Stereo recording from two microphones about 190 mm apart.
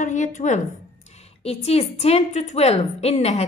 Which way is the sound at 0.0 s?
40° left (ahead or behind).